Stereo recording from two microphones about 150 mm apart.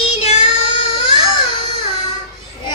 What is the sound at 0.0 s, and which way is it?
Child singing, 45° left (ahead or behind).